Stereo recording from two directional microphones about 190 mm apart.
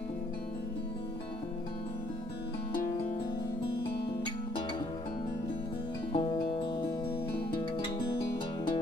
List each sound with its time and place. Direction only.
6.1 s music: 25° left (ahead or behind)